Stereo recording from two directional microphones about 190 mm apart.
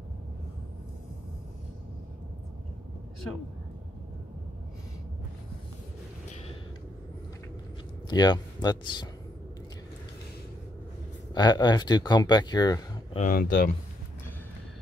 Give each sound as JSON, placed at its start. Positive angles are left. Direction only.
{"t": 8.1, "sound": "speech", "side_deg": 20}
{"t": 11.3, "sound": "speech", "side_deg": 20}
{"t": 13.2, "sound": "speech", "side_deg": 50}